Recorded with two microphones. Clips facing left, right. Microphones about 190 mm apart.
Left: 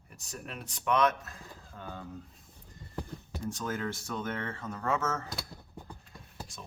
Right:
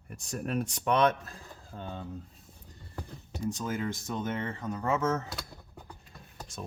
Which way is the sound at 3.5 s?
15° right (ahead or behind).